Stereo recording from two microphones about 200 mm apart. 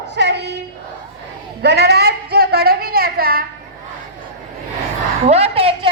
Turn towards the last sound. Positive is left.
turn(degrees=-30)  # may be behind; listen again after turning